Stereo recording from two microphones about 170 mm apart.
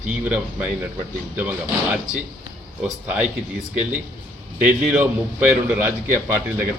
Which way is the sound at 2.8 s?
5° right (ahead or behind).